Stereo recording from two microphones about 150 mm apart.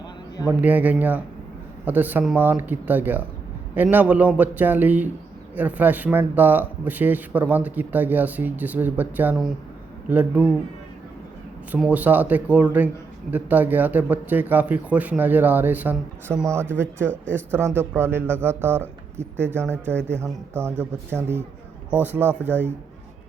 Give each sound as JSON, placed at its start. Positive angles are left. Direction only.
{"t": 0.4, "sound": "speech", "side_deg": -10}
{"t": 11.8, "sound": "speech", "side_deg": -10}
{"t": 19.9, "sound": "speech", "side_deg": 10}
{"t": 20.2, "sound": "speech", "side_deg": -15}